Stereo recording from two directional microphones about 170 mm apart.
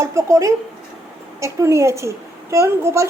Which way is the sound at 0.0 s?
15° right (ahead or behind).